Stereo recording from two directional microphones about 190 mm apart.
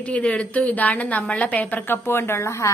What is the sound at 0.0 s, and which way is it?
A woman's voice, 5° left (ahead or behind).